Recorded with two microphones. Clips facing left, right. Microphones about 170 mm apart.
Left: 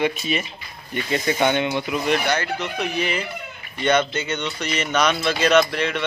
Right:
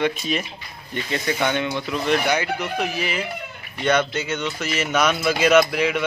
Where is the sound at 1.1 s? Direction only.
20° left (ahead or behind).